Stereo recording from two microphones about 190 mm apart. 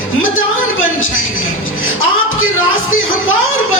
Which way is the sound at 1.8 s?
90° left.